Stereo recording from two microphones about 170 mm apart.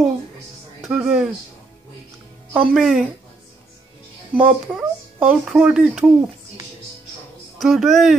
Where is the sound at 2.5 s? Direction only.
5° right (ahead or behind).